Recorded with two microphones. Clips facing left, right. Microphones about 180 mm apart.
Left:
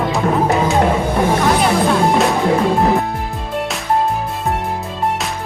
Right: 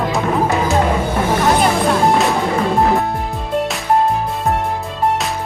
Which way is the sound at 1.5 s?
Centre (ahead or behind).